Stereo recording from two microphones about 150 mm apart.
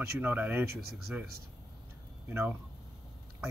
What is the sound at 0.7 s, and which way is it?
Speech, 90° right.